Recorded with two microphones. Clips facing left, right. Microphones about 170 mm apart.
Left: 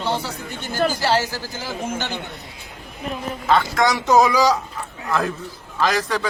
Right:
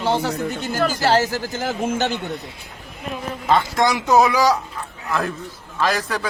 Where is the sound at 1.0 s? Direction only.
45° right (ahead or behind).